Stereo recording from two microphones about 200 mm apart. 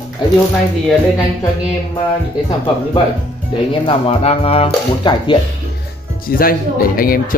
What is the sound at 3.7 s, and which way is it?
Speech, 25° left (ahead or behind).